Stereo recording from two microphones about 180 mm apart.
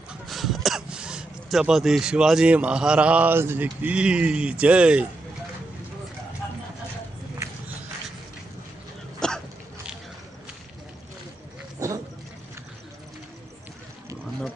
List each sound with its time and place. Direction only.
0.1 s speech: centre (ahead or behind)
9.2 s hiccup: 5° left (ahead or behind)
11.8 s dog: 20° right (ahead or behind)